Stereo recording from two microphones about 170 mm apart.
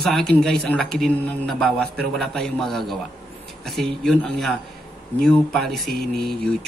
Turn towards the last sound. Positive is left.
turn(degrees=0)  # may be behind; listen again after turning